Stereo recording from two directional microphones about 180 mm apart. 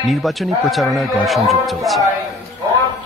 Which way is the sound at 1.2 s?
Centre (ahead or behind).